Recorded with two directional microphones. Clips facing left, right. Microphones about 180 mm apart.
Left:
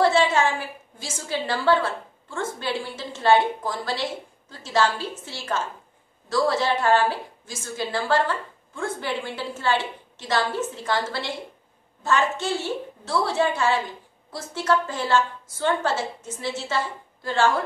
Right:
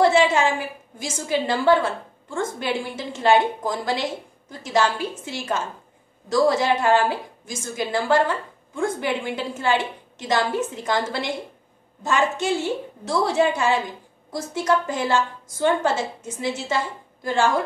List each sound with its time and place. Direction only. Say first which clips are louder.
0.0 s a woman's voice: right 2 dB; 15° right (ahead or behind)